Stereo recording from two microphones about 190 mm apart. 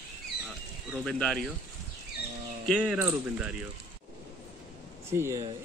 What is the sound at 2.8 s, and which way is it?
Speech, 10° right (ahead or behind).